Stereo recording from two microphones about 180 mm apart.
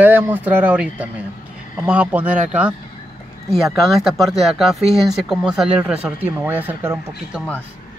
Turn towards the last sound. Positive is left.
turn(degrees=-10)  # may be behind; listen again after turning